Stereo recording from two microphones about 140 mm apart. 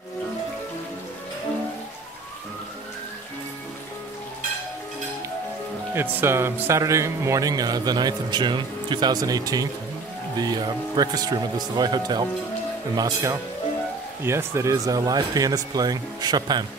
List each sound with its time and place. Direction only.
5.9 s speech: 15° right (ahead or behind); by 16.6 s 30° right (ahead or behind)